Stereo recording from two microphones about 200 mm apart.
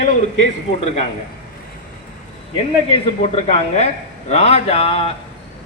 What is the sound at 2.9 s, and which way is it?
A man's voice, 30° left (ahead or behind).